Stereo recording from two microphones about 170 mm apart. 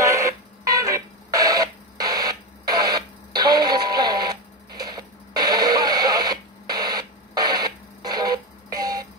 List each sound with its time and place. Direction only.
0.0 s radio: 20° right (ahead or behind)